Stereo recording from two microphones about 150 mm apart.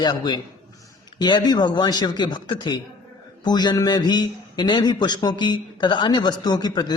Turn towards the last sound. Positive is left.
turn(degrees=25)  # may be behind; listen again after turning